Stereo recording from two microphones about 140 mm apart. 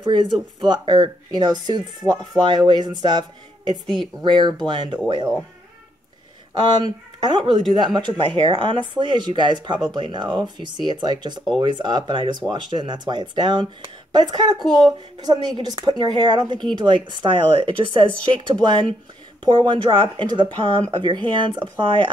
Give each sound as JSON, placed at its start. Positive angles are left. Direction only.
{"t": 0.0, "sound": "speech", "side_deg": -35}
{"t": 3.8, "sound": "speech", "side_deg": 5}
{"t": 4.2, "sound": "speech", "side_deg": -30}
{"t": 6.8, "sound": "speech", "side_deg": -30}